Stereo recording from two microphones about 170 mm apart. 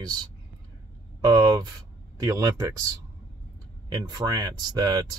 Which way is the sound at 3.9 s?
25° right (ahead or behind).